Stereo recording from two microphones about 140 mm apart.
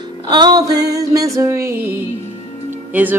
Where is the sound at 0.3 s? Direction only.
30° right (ahead or behind).